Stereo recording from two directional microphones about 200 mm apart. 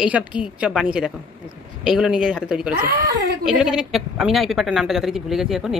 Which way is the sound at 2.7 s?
55° right (ahead or behind).